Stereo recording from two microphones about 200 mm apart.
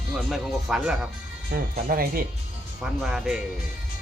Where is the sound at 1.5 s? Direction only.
45° right (ahead or behind).